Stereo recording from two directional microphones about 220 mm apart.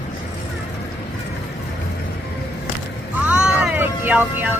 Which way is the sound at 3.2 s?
5° right (ahead or behind).